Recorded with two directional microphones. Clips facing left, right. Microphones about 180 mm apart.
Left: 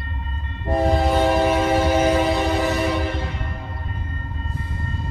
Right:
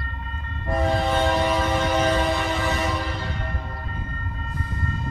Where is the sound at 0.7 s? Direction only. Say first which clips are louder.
Left 4 dB; 35° left (ahead or behind).